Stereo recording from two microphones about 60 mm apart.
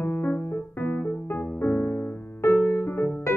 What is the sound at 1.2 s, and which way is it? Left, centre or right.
Music, left.